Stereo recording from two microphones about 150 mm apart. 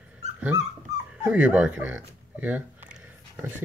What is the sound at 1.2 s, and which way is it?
Speech, 10° right (ahead or behind).